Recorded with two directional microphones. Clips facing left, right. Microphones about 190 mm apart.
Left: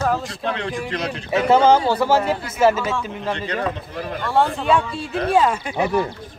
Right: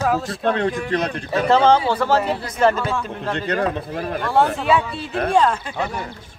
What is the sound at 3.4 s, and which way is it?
Speech, 60° right (ahead or behind).